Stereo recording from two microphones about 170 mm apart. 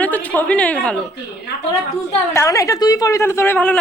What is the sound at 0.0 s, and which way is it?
Speech, 10° left (ahead or behind).